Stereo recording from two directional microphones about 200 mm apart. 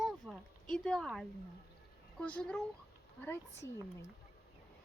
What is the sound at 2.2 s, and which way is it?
Speech, 5° left (ahead or behind).